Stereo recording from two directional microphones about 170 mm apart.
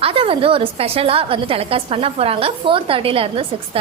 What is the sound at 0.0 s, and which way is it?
A woman's voice, 30° right (ahead or behind).